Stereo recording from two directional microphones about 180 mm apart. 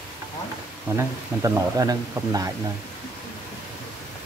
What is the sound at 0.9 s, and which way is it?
Speech, 15° right (ahead or behind).